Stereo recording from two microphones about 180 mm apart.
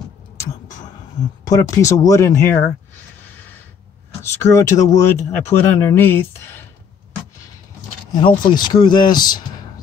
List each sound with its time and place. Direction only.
1.4 s speech: 20° left (ahead or behind)
4.2 s speech: 15° left (ahead or behind)
8.1 s speech: 25° left (ahead or behind)